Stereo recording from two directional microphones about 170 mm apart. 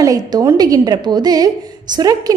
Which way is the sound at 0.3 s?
25° right (ahead or behind).